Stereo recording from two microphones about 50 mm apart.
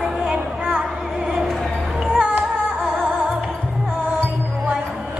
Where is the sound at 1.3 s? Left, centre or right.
Centre.